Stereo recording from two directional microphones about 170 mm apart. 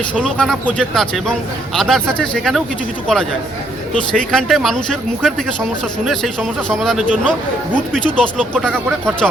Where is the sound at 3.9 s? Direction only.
5° left (ahead or behind).